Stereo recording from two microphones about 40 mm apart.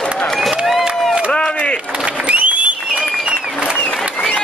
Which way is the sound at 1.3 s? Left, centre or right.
Left.